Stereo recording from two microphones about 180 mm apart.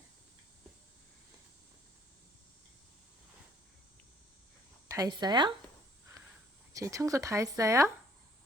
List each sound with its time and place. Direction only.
4.9 s a woman's voice: 20° right (ahead or behind)
6.7 s speech: 15° right (ahead or behind)